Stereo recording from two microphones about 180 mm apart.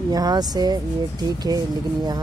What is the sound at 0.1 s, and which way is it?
Speech, 20° right (ahead or behind).